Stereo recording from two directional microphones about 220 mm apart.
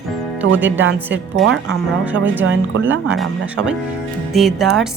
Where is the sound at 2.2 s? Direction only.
60° right (ahead or behind).